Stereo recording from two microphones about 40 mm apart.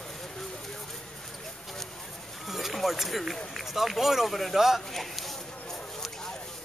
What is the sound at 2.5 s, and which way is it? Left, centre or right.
Run, centre.